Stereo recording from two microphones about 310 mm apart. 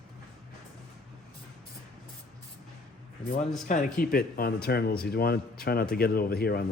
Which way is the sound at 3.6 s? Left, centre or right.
Left.